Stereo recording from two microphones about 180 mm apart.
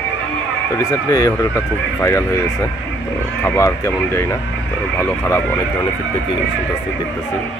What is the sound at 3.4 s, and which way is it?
Speech, 15° left (ahead or behind).